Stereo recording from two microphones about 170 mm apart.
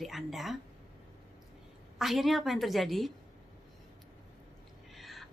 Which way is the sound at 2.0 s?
Centre (ahead or behind).